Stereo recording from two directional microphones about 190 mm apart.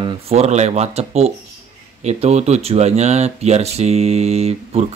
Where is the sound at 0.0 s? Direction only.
35° right (ahead or behind).